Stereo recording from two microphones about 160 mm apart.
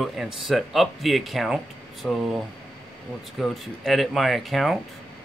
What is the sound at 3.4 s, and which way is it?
Speech, centre (ahead or behind).